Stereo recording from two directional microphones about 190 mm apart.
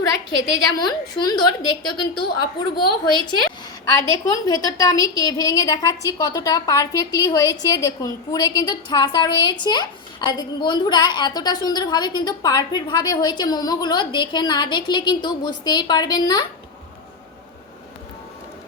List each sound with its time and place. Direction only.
0.8 s a woman's voice: 25° left (ahead or behind)